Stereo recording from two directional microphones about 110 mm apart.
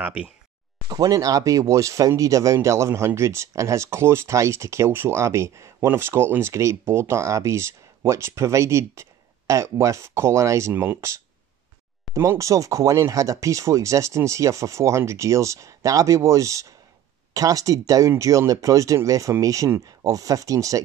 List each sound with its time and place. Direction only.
0.0 s speech: 10° right (ahead or behind)
0.8 s speech: 35° right (ahead or behind)
12.1 s speech: 30° right (ahead or behind)